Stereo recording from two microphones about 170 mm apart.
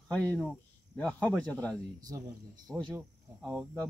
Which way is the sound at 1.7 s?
20° right (ahead or behind).